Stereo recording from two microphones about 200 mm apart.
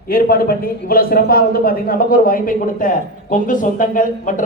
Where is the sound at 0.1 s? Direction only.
50° left (ahead or behind).